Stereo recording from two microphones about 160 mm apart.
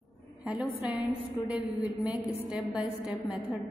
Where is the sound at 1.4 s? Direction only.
30° left (ahead or behind).